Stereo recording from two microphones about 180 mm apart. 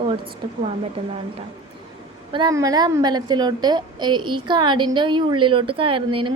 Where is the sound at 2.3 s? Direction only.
25° right (ahead or behind).